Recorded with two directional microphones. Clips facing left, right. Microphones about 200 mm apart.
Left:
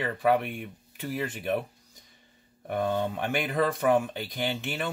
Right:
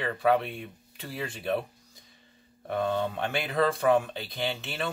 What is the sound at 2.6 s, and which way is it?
Speech, 15° left (ahead or behind).